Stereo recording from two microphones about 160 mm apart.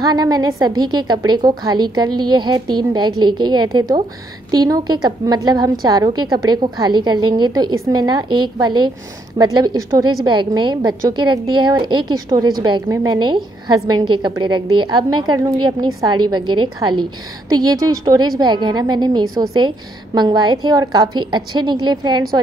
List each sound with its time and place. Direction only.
0.1 s a woman's voice: 25° right (ahead or behind)